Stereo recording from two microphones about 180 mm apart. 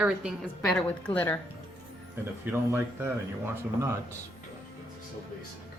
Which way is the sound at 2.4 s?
10° right (ahead or behind).